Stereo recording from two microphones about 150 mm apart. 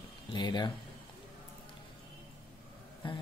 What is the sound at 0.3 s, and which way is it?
Speech, 30° left (ahead or behind).